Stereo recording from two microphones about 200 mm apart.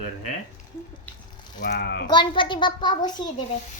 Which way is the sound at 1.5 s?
50° left (ahead or behind).